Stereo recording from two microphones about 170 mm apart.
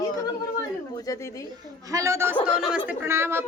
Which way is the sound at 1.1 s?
20° left (ahead or behind).